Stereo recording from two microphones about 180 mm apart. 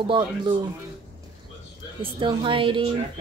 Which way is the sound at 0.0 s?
25° right (ahead or behind).